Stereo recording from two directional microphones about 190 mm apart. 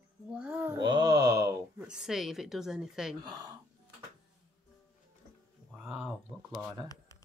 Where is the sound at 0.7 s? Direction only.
20° right (ahead or behind).